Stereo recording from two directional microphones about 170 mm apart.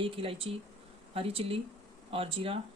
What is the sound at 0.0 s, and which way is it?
Speech, 30° right (ahead or behind).